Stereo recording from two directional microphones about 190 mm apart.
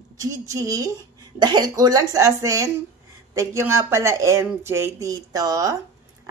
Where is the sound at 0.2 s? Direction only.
15° right (ahead or behind).